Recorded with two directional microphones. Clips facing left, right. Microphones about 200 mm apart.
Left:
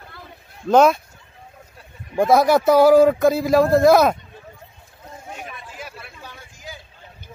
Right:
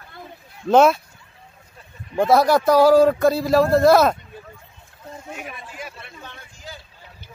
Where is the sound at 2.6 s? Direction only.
20° left (ahead or behind).